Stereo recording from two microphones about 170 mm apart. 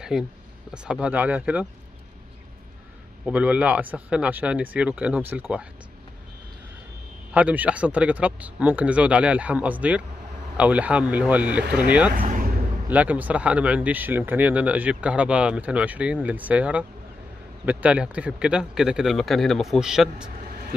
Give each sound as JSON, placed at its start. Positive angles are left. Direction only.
{"t": 0.1, "sound": "speech", "side_deg": -5}
{"t": 3.3, "sound": "speech", "side_deg": -10}
{"t": 7.3, "sound": "speech", "side_deg": -10}
{"t": 12.1, "sound": "a sound", "side_deg": -55}
{"t": 12.8, "sound": "speech", "side_deg": -10}
{"t": 20.4, "sound": "vehicle", "side_deg": -65}